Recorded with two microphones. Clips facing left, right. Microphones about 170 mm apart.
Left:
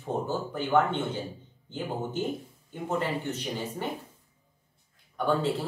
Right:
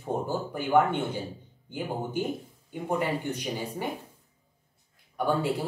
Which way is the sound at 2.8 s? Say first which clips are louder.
Right 1 dB; 10° right (ahead or behind).